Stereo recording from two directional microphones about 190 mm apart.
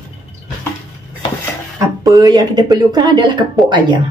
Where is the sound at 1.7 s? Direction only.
20° right (ahead or behind).